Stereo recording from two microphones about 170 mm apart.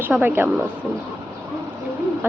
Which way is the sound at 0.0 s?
10° right (ahead or behind).